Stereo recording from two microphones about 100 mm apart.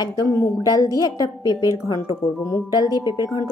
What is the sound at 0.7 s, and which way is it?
Speech, 40° left (ahead or behind).